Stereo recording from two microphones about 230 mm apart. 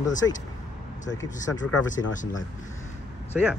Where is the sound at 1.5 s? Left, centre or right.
Left.